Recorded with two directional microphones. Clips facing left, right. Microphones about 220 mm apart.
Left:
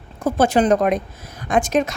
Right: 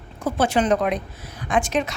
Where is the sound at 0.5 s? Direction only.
40° left (ahead or behind).